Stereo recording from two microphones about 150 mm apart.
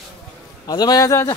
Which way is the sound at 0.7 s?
25° left (ahead or behind).